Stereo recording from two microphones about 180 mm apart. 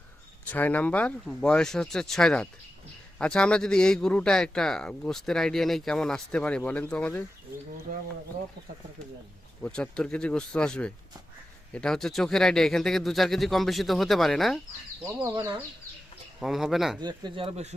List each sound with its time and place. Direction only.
0.4 s a man's voice: 10° left (ahead or behind)
7.9 s speech: 55° right (ahead or behind)
9.6 s a man's voice: 5° left (ahead or behind)
15.0 s speech: 15° right (ahead or behind)
16.4 s a man's voice: centre (ahead or behind)
17.0 s speech: 25° right (ahead or behind)